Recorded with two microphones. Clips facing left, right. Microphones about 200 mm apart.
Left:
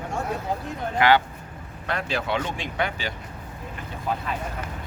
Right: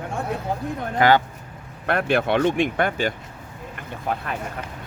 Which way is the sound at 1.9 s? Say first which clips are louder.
Right 7 dB; 60° right (ahead or behind).